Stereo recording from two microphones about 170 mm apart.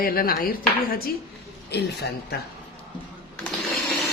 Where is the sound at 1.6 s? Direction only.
75° left (ahead or behind).